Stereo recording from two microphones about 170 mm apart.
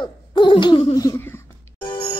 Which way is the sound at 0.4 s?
30° left (ahead or behind).